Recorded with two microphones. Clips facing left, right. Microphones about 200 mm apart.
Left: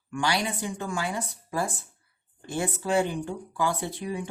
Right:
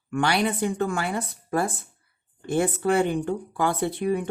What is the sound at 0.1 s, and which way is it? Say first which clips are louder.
Speech: right 5 dB; 60° right (ahead or behind).